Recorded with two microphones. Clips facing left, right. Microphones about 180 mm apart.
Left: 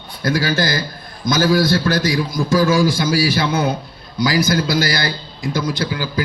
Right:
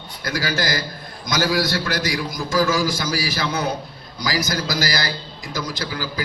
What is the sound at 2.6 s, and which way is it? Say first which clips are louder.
Speech: left 4 dB; 55° left (ahead or behind).